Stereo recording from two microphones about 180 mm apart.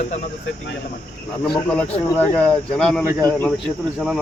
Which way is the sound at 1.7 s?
5° left (ahead or behind).